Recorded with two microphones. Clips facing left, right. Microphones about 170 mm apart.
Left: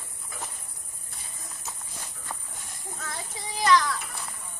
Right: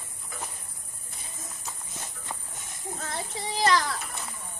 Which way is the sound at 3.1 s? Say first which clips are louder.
Right 5 dB; 30° right (ahead or behind).